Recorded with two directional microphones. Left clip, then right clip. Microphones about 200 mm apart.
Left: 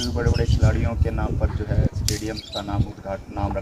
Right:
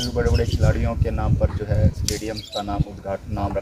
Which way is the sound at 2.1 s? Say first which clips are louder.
Left 1 dB; 15° left (ahead or behind).